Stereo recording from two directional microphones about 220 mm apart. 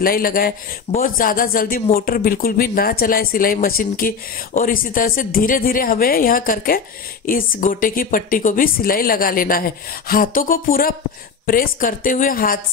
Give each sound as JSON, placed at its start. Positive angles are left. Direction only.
{"t": 0.0, "sound": "speech", "side_deg": 40}